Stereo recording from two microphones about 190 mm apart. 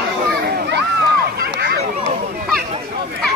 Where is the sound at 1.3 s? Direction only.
55° right (ahead or behind).